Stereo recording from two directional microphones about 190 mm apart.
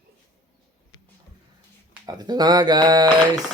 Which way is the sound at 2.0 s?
20° right (ahead or behind).